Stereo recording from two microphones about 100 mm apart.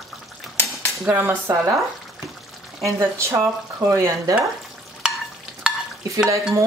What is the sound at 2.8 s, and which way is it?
Speech, 30° right (ahead or behind).